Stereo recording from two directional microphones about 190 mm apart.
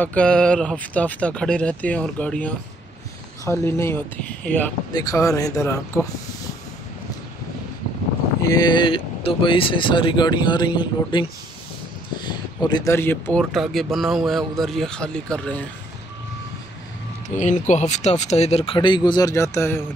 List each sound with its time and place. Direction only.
0.0 s speech: 5° left (ahead or behind)
8.4 s speech: 20° left (ahead or behind)
13.4 s speech: centre (ahead or behind)
17.4 s speech: 40° left (ahead or behind); by 19.8 s 15° left (ahead or behind)